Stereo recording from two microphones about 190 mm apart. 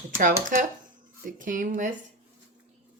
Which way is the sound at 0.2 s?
45° right (ahead or behind).